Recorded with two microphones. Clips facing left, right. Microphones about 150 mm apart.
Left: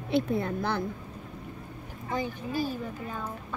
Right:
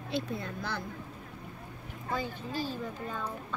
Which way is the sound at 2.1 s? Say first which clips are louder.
Left 3 dB; 15° left (ahead or behind).